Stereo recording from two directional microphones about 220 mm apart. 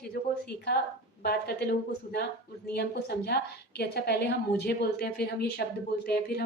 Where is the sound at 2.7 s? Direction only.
45° left (ahead or behind).